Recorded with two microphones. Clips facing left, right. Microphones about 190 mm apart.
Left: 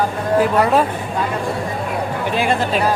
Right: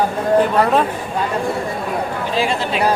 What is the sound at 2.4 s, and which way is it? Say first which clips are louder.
Speech: left 1 dB; 55° left (ahead or behind).